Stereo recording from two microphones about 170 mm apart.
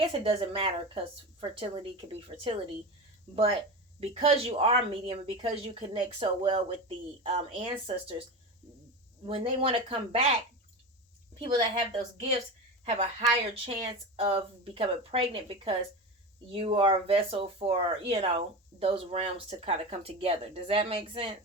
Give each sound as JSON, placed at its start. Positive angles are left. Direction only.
{"t": 0.1, "sound": "speech", "side_deg": -35}
{"t": 9.2, "sound": "speech", "side_deg": -35}
{"t": 11.3, "sound": "a woman's voice", "side_deg": -35}
{"t": 12.8, "sound": "a woman's voice", "side_deg": -40}